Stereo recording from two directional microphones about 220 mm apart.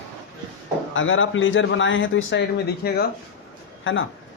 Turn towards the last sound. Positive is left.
turn(degrees=60)  # may be behind; listen again after turning